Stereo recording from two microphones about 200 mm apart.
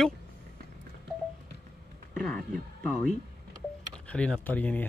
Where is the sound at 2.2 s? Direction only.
5° left (ahead or behind).